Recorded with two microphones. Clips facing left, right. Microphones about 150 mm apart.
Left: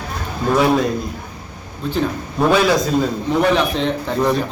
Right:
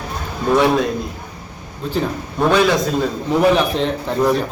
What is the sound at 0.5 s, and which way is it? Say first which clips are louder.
Speech: right 1 dB; centre (ahead or behind).